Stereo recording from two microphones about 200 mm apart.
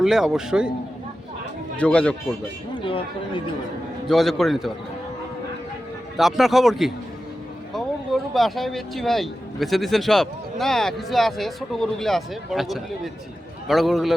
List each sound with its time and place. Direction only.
0.0 s speech: centre (ahead or behind)
1.7 s speech: 5° left (ahead or behind)
2.7 s speech: 25° left (ahead or behind)
4.1 s speech: centre (ahead or behind)
6.1 s speech: centre (ahead or behind)